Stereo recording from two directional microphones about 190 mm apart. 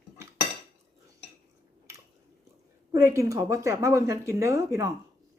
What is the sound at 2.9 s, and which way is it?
Speech, 15° right (ahead or behind).